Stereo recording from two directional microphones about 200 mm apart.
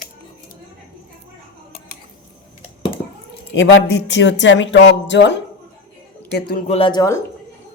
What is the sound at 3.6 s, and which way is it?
Speech, 65° left (ahead or behind).